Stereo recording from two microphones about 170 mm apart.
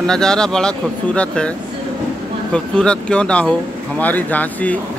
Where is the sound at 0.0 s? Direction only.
5° left (ahead or behind).